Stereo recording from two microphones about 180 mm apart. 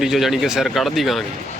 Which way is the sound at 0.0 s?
Centre (ahead or behind).